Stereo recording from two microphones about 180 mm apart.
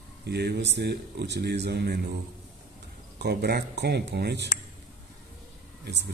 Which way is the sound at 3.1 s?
60° right (ahead or behind).